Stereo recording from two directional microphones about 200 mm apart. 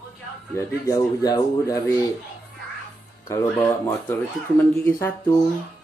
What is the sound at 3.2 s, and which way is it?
Speech, 10° left (ahead or behind).